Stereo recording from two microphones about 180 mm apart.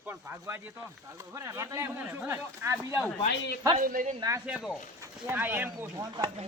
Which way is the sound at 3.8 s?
50° right (ahead or behind).